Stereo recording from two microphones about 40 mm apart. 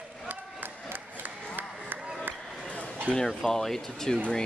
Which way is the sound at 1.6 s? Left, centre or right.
Right.